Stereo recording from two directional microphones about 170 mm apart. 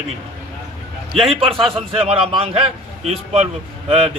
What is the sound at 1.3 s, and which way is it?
A man's voice, 35° right (ahead or behind).